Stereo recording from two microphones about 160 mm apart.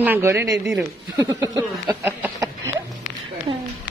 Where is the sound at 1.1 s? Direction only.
25° right (ahead or behind).